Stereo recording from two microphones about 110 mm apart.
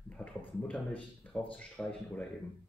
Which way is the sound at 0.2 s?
15° left (ahead or behind).